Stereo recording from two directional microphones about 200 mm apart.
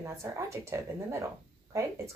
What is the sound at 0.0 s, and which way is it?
Speech, 15° right (ahead or behind).